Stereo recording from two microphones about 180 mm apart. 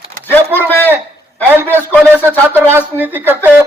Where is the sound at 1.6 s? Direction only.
10° left (ahead or behind).